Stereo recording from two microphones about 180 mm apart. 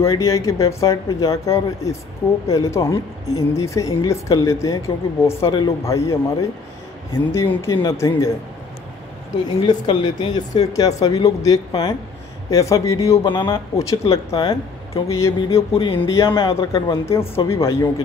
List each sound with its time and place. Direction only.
0.0 s speech: 15° left (ahead or behind)
7.3 s speech: 15° left (ahead or behind)
9.7 s speech: 25° left (ahead or behind)
15.7 s speech: 30° left (ahead or behind)
16.0 s speech: 15° left (ahead or behind)